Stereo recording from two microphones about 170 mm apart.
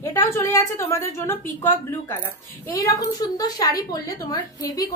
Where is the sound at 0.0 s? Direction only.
20° left (ahead or behind).